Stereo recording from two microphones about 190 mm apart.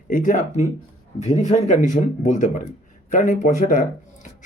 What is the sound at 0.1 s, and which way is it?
Speech, 45° left (ahead or behind).